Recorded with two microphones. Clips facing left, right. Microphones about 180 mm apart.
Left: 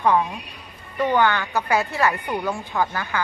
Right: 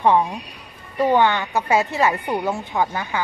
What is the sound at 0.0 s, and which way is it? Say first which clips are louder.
Speech: right 2 dB; 25° right (ahead or behind).